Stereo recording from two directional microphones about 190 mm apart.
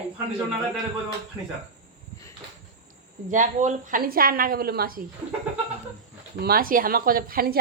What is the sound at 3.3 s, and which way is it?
A woman's voice, 40° right (ahead or behind).